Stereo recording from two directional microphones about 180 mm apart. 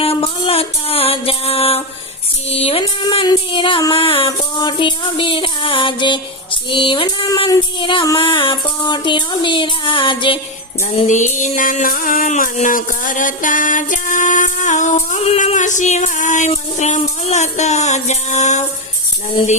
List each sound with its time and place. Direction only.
0.0 s music: 30° left (ahead or behind)
2.6 s a sound: 35° left (ahead or behind)
11.1 s music: 45° left (ahead or behind)